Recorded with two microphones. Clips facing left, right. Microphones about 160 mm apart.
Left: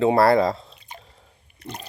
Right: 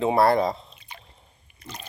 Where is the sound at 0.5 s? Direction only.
35° left (ahead or behind).